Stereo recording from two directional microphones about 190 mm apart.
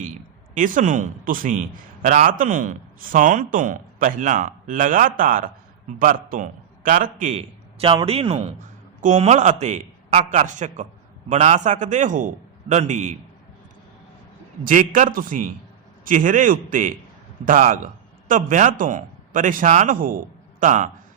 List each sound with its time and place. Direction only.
0.5 s a man's voice: 45° right (ahead or behind)
14.6 s a man's voice: 45° right (ahead or behind)